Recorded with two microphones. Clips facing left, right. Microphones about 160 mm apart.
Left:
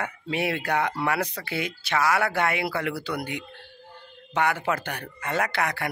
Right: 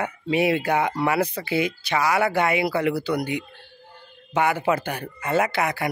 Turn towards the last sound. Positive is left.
turn(degrees=-5)  # may be behind; listen again after turning